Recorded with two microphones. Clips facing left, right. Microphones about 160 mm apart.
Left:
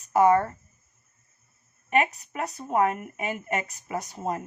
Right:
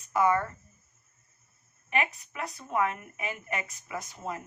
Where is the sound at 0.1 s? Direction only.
40° left (ahead or behind).